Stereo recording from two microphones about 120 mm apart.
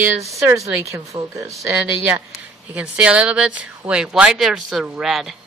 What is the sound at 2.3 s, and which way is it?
Speech, 10° right (ahead or behind).